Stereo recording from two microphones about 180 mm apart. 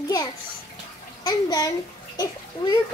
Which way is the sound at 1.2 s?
20° left (ahead or behind).